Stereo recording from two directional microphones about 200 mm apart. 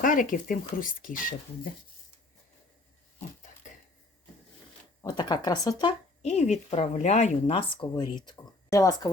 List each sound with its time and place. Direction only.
0.0 s speech: 40° left (ahead or behind)
5.0 s speech: 20° left (ahead or behind)
6.2 s a woman's voice: 35° left (ahead or behind); by 9.1 s 15° left (ahead or behind)